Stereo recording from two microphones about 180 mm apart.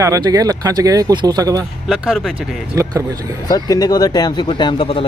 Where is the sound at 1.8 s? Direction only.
Centre (ahead or behind).